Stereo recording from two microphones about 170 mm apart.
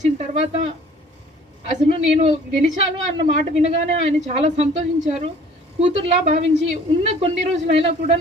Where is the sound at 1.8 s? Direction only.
40° right (ahead or behind).